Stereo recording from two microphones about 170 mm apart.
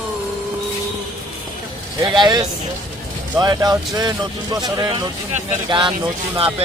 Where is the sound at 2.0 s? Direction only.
25° right (ahead or behind).